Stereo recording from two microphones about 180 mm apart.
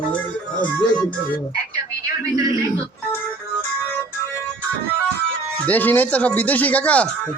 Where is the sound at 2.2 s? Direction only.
15° right (ahead or behind).